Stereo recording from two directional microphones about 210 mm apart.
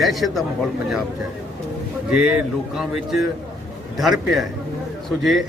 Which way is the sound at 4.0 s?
Centre (ahead or behind).